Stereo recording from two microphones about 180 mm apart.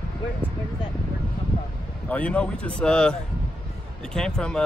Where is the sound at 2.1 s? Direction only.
5° left (ahead or behind).